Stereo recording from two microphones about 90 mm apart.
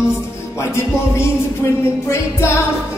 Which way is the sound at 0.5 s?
30° left (ahead or behind).